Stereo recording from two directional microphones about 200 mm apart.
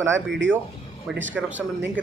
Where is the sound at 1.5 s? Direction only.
10° right (ahead or behind).